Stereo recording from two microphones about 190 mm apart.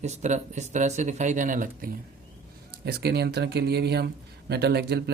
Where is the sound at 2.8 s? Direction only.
60° right (ahead or behind).